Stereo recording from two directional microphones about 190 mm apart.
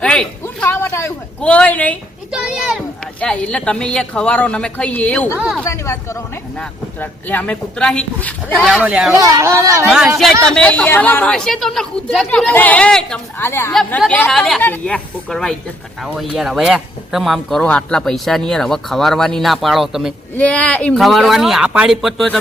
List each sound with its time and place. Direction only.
0.0 s a sound: 5° left (ahead or behind)
2.3 s speech: 5° right (ahead or behind)
5.6 s speech: 15° left (ahead or behind); by 9.1 s 5° right (ahead or behind)
9.1 s speech: 15° right (ahead or behind)
10.4 s speech: 5° left (ahead or behind)